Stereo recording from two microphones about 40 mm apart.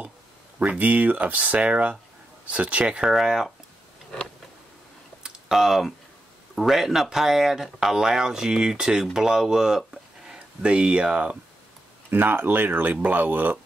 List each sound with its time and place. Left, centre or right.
0.6 s speech: right
5.2 s a sound: centre
6.5 s speech: centre
9.1 s a sound: centre
10.6 s speech: right
12.1 s speech: right